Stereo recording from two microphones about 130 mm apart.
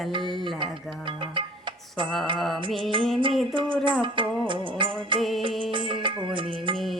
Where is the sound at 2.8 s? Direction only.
40° right (ahead or behind).